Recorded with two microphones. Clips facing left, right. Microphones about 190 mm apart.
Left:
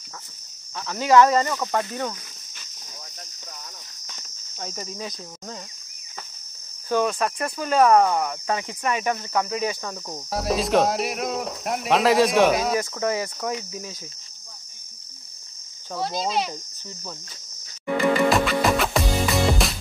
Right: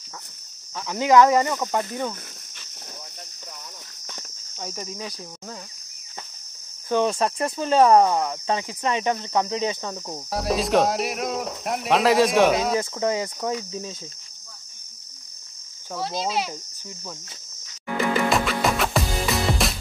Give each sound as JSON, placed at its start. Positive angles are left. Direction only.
{"t": 0.8, "sound": "speech", "side_deg": -15}
{"t": 4.0, "sound": "cricket", "side_deg": -55}
{"t": 4.6, "sound": "speech", "side_deg": -5}
{"t": 6.9, "sound": "speech", "side_deg": -25}
{"t": 10.0, "sound": "speech", "side_deg": -5}
{"t": 12.7, "sound": "speech", "side_deg": -20}
{"t": 15.9, "sound": "speech", "side_deg": 0}
{"t": 18.3, "sound": "music", "side_deg": 0}